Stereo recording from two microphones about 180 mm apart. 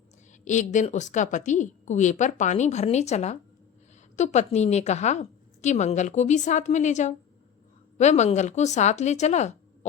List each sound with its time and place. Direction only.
0.4 s a woman's voice: 45° left (ahead or behind)